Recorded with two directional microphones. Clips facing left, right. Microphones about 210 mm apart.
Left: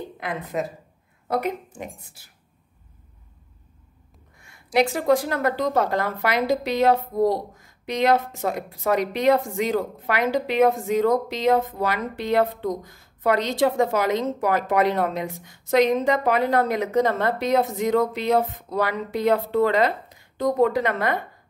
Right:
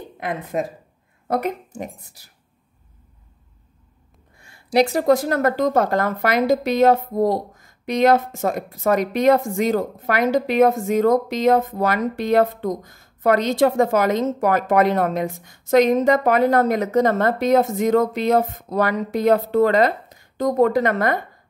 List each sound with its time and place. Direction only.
0.2 s a woman's voice: 50° right (ahead or behind)
4.4 s a woman's voice: 30° right (ahead or behind)